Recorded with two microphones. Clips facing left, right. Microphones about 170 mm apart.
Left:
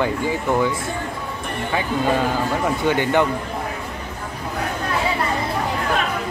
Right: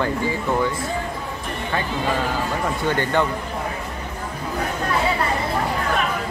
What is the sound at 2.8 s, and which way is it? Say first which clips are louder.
Speech: left 2 dB; 15° left (ahead or behind).